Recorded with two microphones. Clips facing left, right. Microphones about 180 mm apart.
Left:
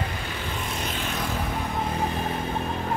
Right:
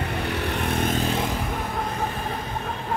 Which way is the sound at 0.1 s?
65° right (ahead or behind).